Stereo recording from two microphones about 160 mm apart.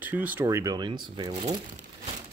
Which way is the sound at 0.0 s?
10° right (ahead or behind).